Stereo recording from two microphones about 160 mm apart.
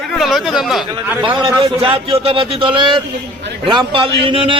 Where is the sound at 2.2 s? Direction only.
35° right (ahead or behind).